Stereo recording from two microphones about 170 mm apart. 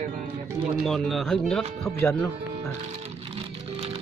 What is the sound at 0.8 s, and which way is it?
Speech, centre (ahead or behind).